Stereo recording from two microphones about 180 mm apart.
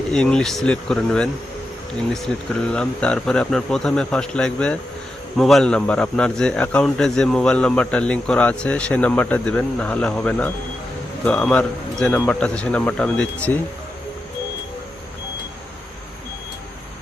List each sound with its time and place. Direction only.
0.1 s speech: 5° left (ahead or behind)